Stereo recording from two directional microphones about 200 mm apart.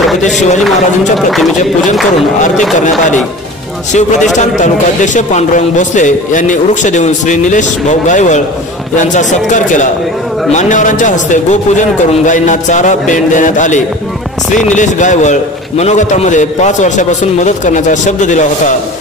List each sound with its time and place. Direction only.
4.4 s a man's voice: 40° left (ahead or behind)